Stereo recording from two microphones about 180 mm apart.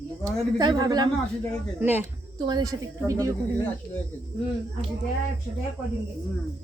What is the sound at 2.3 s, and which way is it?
A woman's voice, 25° right (ahead or behind).